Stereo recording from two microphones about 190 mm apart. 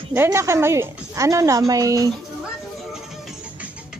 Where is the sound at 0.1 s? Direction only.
15° right (ahead or behind).